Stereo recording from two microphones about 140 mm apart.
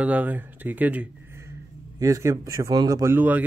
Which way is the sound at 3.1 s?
10° right (ahead or behind).